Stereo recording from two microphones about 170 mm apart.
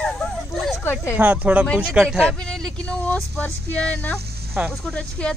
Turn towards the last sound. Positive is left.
turn(degrees=5)  # may be behind; listen again after turning